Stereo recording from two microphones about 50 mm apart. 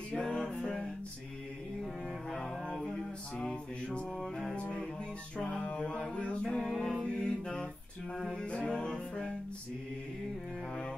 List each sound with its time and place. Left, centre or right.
0.2 s music: centre
2.3 s music: centre
4.6 s music: centre
5.4 s mantra: left
6.6 s music: centre